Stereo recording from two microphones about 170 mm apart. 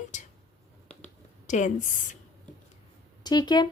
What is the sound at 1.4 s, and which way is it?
Speech, 45° left (ahead or behind).